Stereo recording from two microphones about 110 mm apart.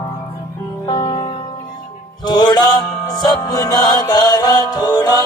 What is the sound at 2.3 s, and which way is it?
Music, 40° left (ahead or behind).